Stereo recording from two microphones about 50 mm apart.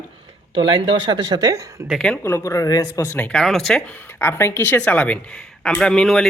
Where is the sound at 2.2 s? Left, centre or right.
Left.